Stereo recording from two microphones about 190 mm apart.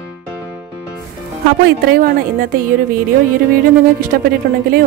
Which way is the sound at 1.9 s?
50° right (ahead or behind).